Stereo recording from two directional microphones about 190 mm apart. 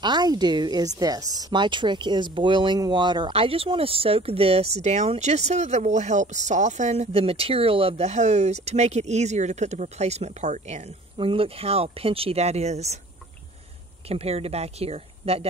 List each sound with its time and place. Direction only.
0.0 s speech: 20° right (ahead or behind)
14.0 s speech: 30° right (ahead or behind)